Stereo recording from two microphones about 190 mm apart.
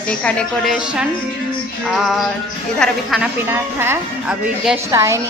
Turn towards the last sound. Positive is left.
turn(degrees=-15)  # may be behind; listen again after turning